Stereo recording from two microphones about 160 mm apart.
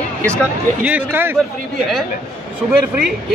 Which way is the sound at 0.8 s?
10° right (ahead or behind).